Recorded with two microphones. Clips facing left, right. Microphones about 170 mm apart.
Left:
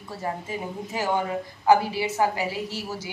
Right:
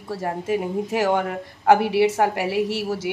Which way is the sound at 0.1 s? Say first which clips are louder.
Right 7 dB; 70° right (ahead or behind).